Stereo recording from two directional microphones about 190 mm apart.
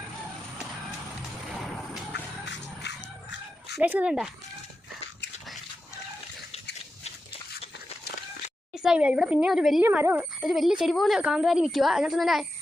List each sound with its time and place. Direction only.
1.5 s a sound: centre (ahead or behind)
2.1 s music: 65° left (ahead or behind)
3.8 s speech: 10° right (ahead or behind)
8.8 s speech: 5° right (ahead or behind)